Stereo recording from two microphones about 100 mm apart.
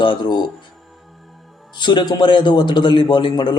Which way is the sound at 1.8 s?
50° left (ahead or behind).